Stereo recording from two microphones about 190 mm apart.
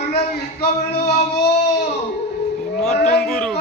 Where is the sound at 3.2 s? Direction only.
5° left (ahead or behind).